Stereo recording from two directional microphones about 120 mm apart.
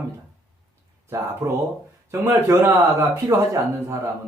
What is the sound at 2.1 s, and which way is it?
Speech, 25° right (ahead or behind).